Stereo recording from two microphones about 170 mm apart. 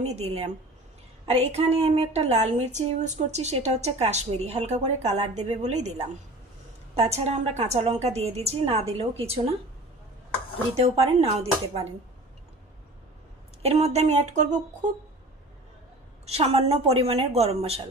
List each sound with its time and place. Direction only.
0.0 s a woman's voice: 40° right (ahead or behind)
10.7 s a woman's voice: 35° right (ahead or behind)
13.6 s a woman's voice: 40° right (ahead or behind)
16.3 s a woman's voice: 35° right (ahead or behind)